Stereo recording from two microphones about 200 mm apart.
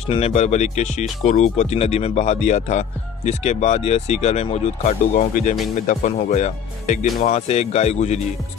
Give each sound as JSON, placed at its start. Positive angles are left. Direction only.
{"t": 0.0, "sound": "speech", "side_deg": 30}